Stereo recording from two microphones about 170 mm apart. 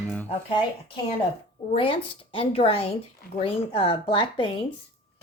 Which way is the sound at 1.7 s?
30° left (ahead or behind).